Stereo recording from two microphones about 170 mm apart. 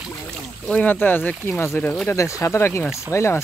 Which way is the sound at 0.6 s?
10° left (ahead or behind).